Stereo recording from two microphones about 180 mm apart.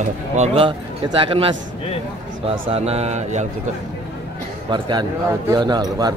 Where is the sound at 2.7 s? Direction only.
35° right (ahead or behind).